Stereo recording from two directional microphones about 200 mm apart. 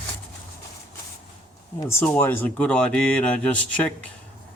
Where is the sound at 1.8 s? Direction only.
10° left (ahead or behind).